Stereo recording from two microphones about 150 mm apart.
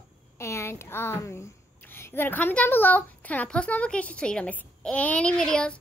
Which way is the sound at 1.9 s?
15° left (ahead or behind).